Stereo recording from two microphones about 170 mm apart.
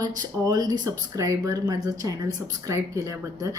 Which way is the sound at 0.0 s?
25° right (ahead or behind).